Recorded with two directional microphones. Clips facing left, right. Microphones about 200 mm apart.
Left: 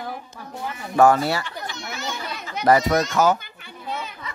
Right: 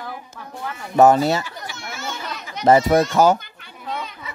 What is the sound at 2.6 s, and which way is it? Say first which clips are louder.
Speech: right 3 dB; 25° right (ahead or behind).